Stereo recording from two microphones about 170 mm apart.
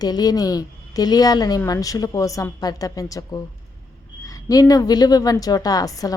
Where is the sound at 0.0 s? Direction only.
25° left (ahead or behind).